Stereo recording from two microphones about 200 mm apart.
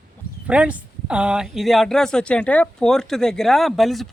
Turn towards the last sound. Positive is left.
turn(degrees=0)  # may be behind; listen again after turning